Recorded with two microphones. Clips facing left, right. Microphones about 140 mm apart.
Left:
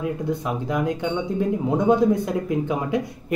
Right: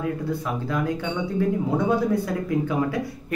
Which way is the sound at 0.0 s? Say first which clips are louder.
Left 1 dB; 20° left (ahead or behind).